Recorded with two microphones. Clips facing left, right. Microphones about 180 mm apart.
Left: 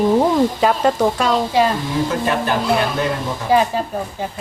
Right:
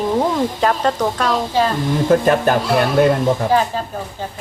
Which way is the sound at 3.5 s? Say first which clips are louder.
Left 4 dB; 10° left (ahead or behind).